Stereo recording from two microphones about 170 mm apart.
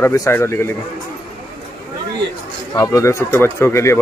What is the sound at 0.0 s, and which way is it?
Speech, 15° left (ahead or behind).